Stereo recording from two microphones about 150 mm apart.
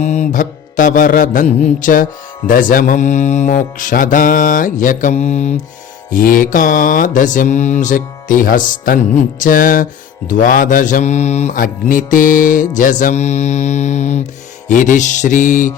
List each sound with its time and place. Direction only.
0.0 s mantra: 50° left (ahead or behind)
6.1 s mantra: 70° left (ahead or behind)